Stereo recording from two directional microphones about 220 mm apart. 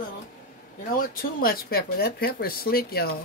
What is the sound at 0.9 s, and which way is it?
Speech, 40° left (ahead or behind).